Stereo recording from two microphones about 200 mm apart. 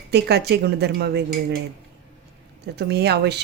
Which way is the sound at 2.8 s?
55° right (ahead or behind).